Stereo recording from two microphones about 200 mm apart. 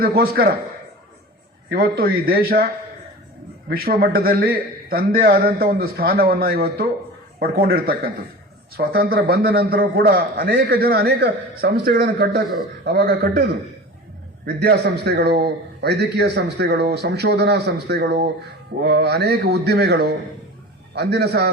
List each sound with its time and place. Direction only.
0.0 s a man's voice: 50° right (ahead or behind)
1.7 s a man's voice: 50° right (ahead or behind)
3.7 s a man's voice: 50° right (ahead or behind)